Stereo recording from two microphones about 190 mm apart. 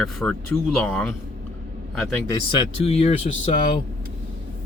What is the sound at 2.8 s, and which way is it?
Speech, 30° left (ahead or behind).